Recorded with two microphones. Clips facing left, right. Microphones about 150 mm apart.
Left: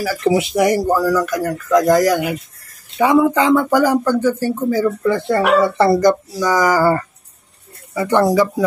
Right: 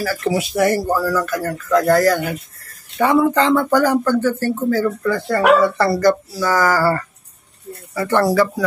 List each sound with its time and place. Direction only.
0.0 s speech: 15° left (ahead or behind)